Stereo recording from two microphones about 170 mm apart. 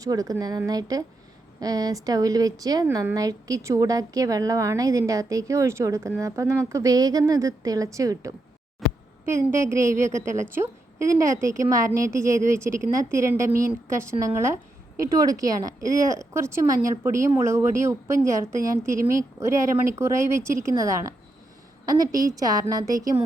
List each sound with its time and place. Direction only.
0.0 s speech: 20° right (ahead or behind)
8.8 s a sound: centre (ahead or behind)
9.2 s speech: 15° right (ahead or behind)